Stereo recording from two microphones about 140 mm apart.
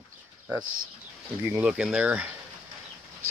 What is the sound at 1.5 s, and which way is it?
Speech, 5° right (ahead or behind).